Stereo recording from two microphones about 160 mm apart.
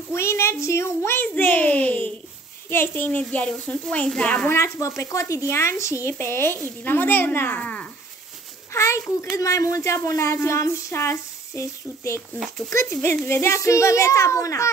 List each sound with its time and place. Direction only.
0.1 s a child's voice: 15° left (ahead or behind)
13.3 s a child's voice: 15° left (ahead or behind)